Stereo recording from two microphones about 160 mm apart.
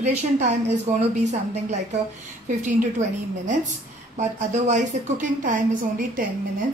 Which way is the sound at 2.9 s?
50° right (ahead or behind).